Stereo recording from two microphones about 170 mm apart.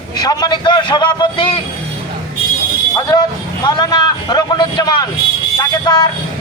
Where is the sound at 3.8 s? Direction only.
25° left (ahead or behind).